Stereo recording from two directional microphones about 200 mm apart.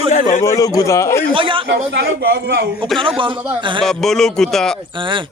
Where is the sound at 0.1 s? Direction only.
40° left (ahead or behind).